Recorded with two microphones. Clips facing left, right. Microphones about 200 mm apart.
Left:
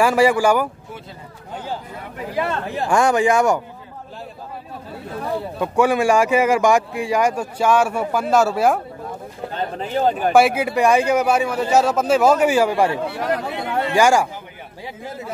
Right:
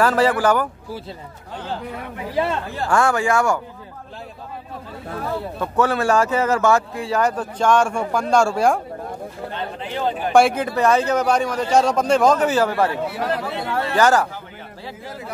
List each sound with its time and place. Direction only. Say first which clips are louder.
0.0 s speech: left 2 dB; 10° left (ahead or behind)
2.7 s speech: left 3 dB; 15° left (ahead or behind)
5.3 s speech: left 3 dB; 15° left (ahead or behind)
9.5 s speech: left 7 dB; 40° left (ahead or behind)
10.3 s speech: right 2 dB; 5° left (ahead or behind)